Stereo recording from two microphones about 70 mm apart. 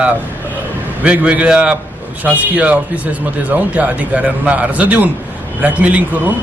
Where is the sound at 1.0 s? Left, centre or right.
Centre.